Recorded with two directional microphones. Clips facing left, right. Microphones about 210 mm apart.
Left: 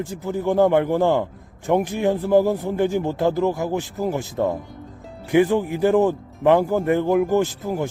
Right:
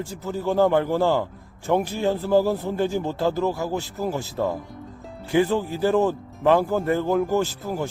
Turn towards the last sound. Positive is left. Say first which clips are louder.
# left 3 dB
turn(degrees=15)  # may be behind; listen again after turning